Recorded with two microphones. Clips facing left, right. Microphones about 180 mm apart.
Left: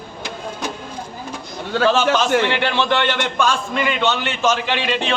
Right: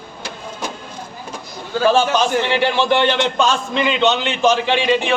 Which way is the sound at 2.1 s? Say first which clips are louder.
Even; 10° right (ahead or behind).